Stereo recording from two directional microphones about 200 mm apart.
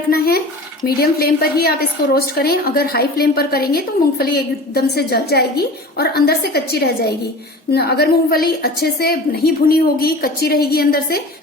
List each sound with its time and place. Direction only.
0.1 s a woman's voice: 50° left (ahead or behind)